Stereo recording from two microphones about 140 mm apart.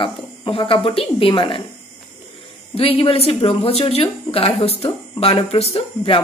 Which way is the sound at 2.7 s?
45° left (ahead or behind).